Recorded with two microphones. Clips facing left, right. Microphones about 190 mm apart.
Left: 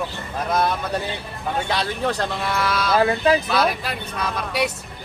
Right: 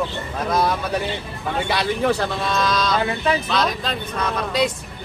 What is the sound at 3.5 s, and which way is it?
Speech, 5° left (ahead or behind).